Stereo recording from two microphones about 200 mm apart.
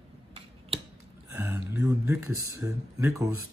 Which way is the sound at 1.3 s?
10° right (ahead or behind).